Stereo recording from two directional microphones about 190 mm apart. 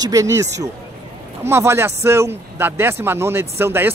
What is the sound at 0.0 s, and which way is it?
Speech, 15° right (ahead or behind).